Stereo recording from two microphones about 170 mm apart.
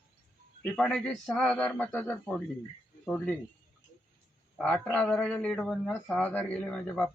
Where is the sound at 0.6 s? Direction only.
5° left (ahead or behind).